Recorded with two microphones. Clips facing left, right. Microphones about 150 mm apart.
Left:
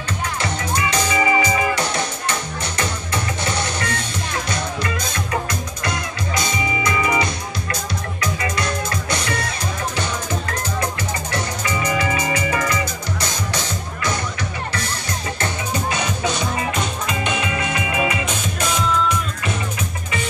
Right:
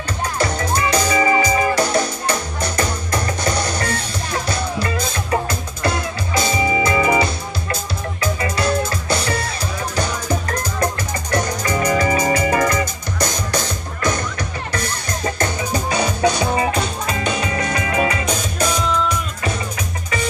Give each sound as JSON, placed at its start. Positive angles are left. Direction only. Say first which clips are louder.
{"t": 0.4, "sound": "music", "louder": "right 5 dB", "side_deg": -35}
{"t": 11.3, "sound": "music", "louder": "right 7 dB", "side_deg": -40}
{"t": 16.7, "sound": "music", "louder": "right 2 dB", "side_deg": -35}